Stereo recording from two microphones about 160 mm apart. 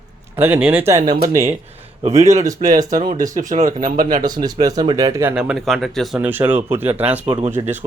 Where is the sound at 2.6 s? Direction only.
35° right (ahead or behind).